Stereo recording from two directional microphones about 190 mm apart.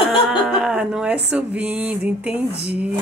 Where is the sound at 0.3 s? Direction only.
5° right (ahead or behind).